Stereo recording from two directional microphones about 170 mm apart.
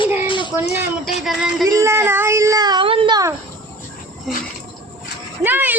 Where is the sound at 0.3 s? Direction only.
30° left (ahead or behind).